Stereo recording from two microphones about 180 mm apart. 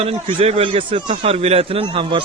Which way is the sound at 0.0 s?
30° right (ahead or behind).